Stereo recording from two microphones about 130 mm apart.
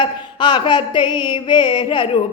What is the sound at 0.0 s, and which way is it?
Speech, 35° left (ahead or behind).